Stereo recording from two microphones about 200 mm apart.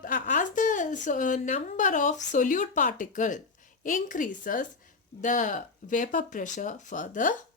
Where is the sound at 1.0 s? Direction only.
40° left (ahead or behind).